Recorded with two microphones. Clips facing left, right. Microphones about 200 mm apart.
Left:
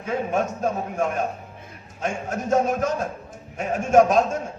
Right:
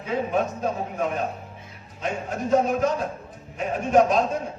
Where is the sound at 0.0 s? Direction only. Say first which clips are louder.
Even; 45° left (ahead or behind).